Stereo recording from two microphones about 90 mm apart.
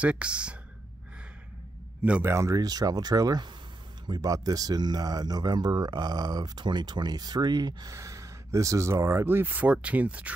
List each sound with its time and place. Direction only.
0.0 s speech: 15° right (ahead or behind)
2.2 s speech: 35° right (ahead or behind); by 10.3 s 15° right (ahead or behind)